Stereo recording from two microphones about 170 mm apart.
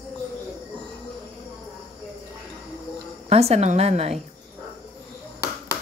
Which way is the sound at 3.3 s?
40° right (ahead or behind).